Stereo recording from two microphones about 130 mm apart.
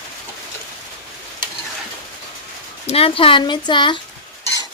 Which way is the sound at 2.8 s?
50° left (ahead or behind).